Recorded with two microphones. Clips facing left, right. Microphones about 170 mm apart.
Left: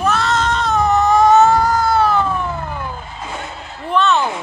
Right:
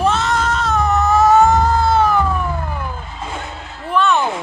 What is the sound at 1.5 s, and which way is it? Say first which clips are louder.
Cat: even; 25° right (ahead or behind).